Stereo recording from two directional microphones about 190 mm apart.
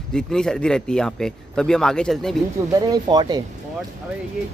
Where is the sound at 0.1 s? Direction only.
5° left (ahead or behind).